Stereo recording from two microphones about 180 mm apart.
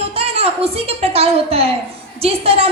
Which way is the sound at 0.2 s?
35° right (ahead or behind).